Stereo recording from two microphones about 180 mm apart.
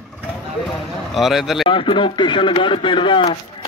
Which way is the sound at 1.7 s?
30° left (ahead or behind).